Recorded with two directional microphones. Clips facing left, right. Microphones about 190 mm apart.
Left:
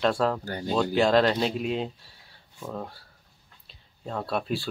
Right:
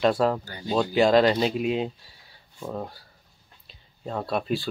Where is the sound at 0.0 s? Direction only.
5° right (ahead or behind).